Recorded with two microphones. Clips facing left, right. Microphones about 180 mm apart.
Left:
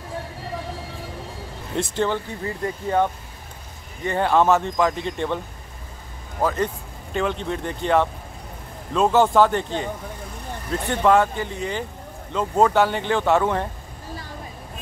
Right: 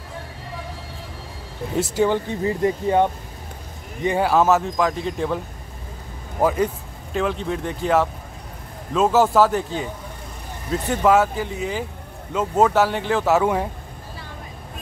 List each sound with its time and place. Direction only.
1.8 s speech: 10° right (ahead or behind)
2.4 s speech: 20° right (ahead or behind); by 5.4 s centre (ahead or behind)
6.4 s speech: 10° right (ahead or behind)